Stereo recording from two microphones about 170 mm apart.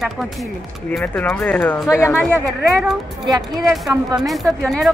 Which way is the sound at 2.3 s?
20° right (ahead or behind).